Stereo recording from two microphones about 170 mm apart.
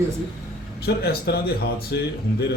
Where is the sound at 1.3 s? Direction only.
75° left (ahead or behind).